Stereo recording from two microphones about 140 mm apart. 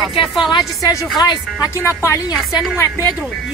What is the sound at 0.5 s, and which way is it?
Speech, 30° left (ahead or behind).